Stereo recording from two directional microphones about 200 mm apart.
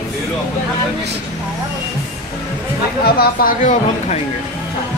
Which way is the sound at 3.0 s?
50° left (ahead or behind).